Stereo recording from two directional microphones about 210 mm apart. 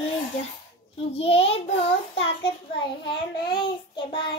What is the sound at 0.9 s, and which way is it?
Child singing, 30° left (ahead or behind).